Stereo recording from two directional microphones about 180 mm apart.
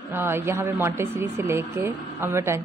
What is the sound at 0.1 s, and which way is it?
A woman's voice, 15° right (ahead or behind).